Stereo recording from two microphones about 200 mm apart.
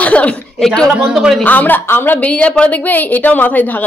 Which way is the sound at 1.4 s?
10° left (ahead or behind).